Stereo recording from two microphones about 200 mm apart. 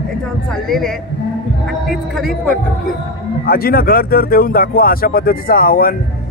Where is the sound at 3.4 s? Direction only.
50° left (ahead or behind).